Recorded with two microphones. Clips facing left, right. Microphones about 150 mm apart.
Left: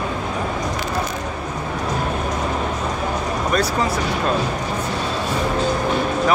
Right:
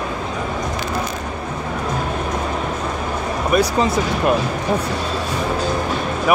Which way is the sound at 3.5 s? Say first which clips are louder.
Right 5 dB; 15° right (ahead or behind).